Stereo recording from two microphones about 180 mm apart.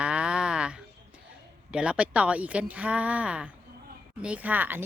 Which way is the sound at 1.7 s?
5° right (ahead or behind).